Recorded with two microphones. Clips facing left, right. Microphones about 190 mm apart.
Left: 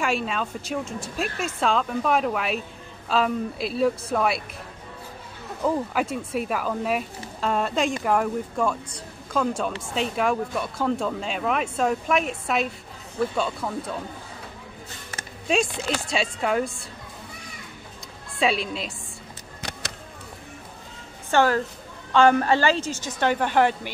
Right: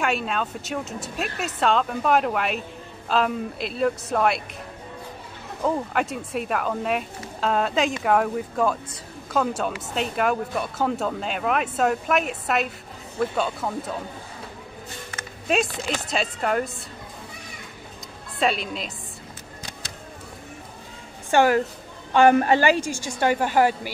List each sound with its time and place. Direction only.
0.0 s speech: centre (ahead or behind)
5.9 s speech: centre (ahead or behind)
15.4 s speech: 5° right (ahead or behind)
18.4 s speech: centre (ahead or behind)
21.3 s a woman's voice: 15° right (ahead or behind)